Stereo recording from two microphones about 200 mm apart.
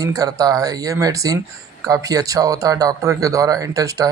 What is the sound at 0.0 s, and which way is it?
Speech, 15° right (ahead or behind).